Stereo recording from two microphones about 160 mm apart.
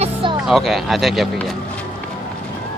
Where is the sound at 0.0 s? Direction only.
30° right (ahead or behind).